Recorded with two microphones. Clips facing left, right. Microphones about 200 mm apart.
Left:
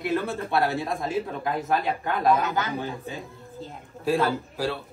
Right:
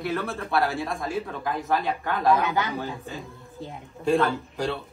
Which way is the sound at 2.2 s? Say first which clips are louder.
Right 1 dB; centre (ahead or behind).